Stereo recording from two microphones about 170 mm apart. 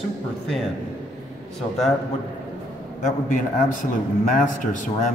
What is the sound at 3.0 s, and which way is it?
A man's voice, 50° left (ahead or behind).